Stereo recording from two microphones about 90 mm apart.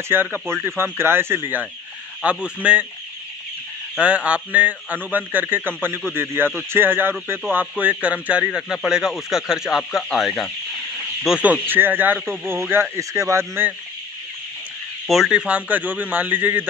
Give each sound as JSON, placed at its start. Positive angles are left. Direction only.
{"t": 0.1, "sound": "a man's voice", "side_deg": -25}
{"t": 4.0, "sound": "a man's voice", "side_deg": -15}
{"t": 11.4, "sound": "a man's voice", "side_deg": -20}
{"t": 15.0, "sound": "a man's voice", "side_deg": -5}